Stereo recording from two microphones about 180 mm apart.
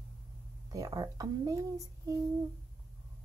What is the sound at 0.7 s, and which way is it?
Speech, 20° right (ahead or behind).